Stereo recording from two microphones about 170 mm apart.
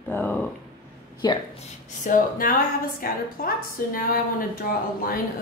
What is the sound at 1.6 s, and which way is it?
A woman's voice, 50° left (ahead or behind).